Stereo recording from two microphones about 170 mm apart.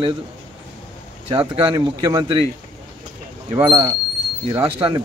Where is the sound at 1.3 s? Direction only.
30° right (ahead or behind).